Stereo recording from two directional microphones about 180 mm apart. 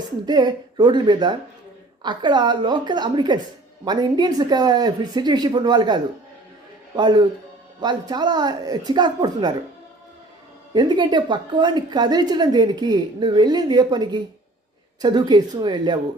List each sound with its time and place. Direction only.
0.3 s a woman's voice: 25° right (ahead or behind)
10.8 s a woman's voice: 25° right (ahead or behind)